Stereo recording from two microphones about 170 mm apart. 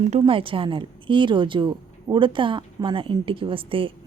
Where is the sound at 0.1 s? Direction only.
30° right (ahead or behind).